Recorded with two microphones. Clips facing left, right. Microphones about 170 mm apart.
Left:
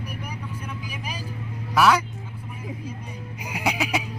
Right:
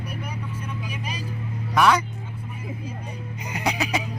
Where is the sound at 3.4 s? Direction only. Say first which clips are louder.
Even; 5° left (ahead or behind).